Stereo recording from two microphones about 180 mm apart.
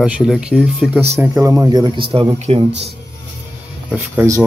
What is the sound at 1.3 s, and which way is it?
Speech, 15° right (ahead or behind).